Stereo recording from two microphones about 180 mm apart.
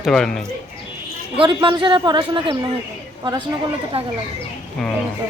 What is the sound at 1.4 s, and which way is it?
Speech, 30° right (ahead or behind).